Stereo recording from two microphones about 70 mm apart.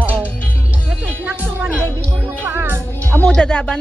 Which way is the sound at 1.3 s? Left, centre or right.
Right.